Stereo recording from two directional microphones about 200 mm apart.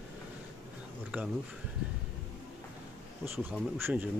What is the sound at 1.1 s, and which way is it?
Speech, 5° right (ahead or behind).